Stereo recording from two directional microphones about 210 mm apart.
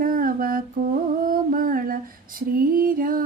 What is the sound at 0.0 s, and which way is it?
Humming, 40° right (ahead or behind).